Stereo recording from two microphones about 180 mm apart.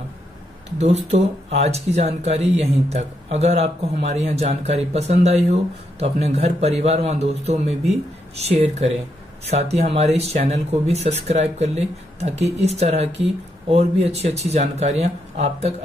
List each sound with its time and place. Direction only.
0.7 s speech: 40° right (ahead or behind)